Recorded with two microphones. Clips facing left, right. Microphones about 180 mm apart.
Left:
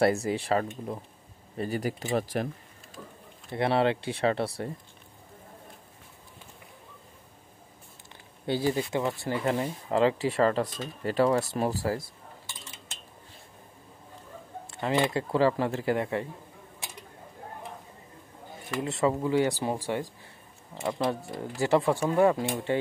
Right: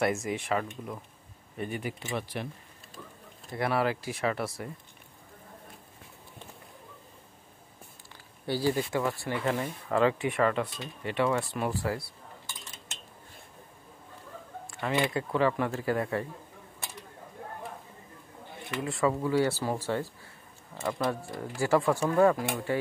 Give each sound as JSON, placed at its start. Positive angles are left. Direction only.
{"t": 0.0, "sound": "speech", "side_deg": 35}
{"t": 3.5, "sound": "speech", "side_deg": 25}
{"t": 8.5, "sound": "speech", "side_deg": 20}
{"t": 14.7, "sound": "speech", "side_deg": 30}
{"t": 18.8, "sound": "speech", "side_deg": 20}